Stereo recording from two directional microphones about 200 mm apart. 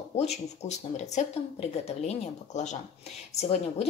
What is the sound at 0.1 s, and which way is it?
Speech, 35° left (ahead or behind).